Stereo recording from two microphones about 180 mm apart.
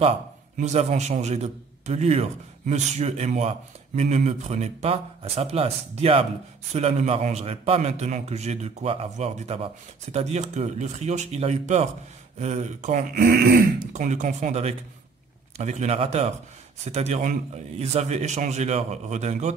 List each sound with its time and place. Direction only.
0.6 s a man's voice: 40° right (ahead or behind)